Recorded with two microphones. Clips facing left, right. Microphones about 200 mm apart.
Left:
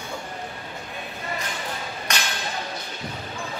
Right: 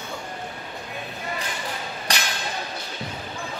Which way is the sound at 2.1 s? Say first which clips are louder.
Right 1 dB; 35° right (ahead or behind).